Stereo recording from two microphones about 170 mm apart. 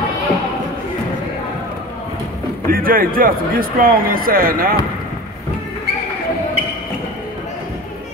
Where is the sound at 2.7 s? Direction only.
60° right (ahead or behind).